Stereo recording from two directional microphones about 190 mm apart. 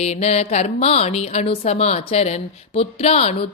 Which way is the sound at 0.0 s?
35° left (ahead or behind).